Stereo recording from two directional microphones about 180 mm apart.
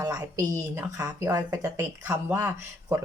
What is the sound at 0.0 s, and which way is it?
Speech, 20° right (ahead or behind).